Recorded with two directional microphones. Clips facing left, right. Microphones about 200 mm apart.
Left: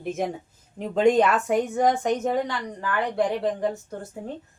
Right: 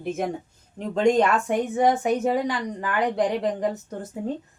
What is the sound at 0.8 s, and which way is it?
A woman's voice, 5° left (ahead or behind).